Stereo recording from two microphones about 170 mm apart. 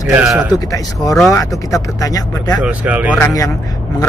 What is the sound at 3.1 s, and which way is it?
Speech, 20° left (ahead or behind).